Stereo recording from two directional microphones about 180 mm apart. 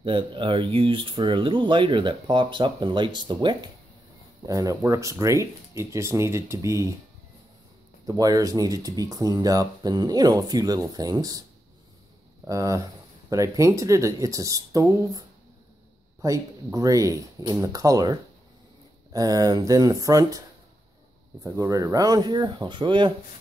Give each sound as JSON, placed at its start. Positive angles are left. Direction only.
{"t": 0.0, "sound": "speech", "side_deg": -30}
{"t": 8.1, "sound": "speech", "side_deg": -20}
{"t": 12.4, "sound": "speech", "side_deg": -20}